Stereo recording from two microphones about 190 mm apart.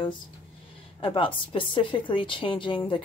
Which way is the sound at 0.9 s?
25° left (ahead or behind).